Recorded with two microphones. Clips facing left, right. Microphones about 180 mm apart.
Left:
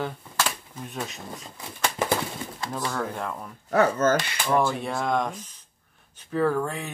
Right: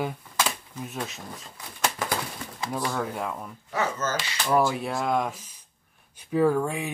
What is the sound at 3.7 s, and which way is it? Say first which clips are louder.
Speech: left 7 dB; 55° left (ahead or behind).